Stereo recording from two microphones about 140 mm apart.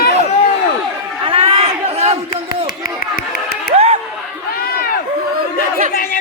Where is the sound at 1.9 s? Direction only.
45° right (ahead or behind).